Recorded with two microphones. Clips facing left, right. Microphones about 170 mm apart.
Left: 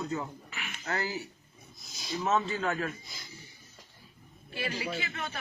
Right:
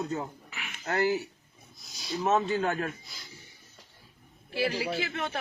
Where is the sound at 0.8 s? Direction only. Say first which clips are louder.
Right 7 dB; 55° right (ahead or behind).